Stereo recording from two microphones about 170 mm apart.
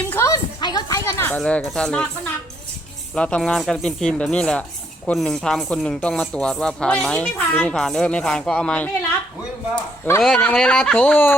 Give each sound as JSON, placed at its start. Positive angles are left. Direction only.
{"t": 0.1, "sound": "a sound", "side_deg": 15}
{"t": 1.4, "sound": "speech", "side_deg": 5}
{"t": 3.2, "sound": "speech", "side_deg": 5}